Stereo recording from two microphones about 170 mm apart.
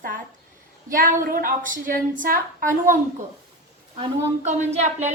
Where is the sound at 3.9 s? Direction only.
40° right (ahead or behind).